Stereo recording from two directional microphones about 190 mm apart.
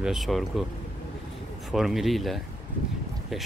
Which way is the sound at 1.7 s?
Centre (ahead or behind).